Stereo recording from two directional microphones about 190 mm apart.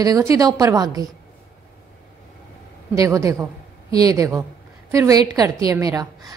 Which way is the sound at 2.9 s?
15° right (ahead or behind).